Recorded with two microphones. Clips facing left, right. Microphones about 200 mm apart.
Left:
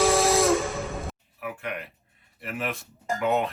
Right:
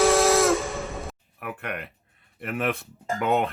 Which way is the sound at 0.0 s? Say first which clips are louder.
Right 2 dB; centre (ahead or behind).